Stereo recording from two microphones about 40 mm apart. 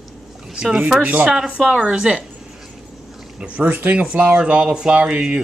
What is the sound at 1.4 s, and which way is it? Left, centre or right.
Speech, right.